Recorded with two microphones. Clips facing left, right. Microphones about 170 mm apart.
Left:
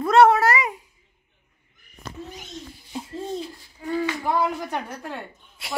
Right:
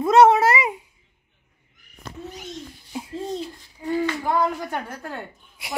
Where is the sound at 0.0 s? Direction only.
20° right (ahead or behind).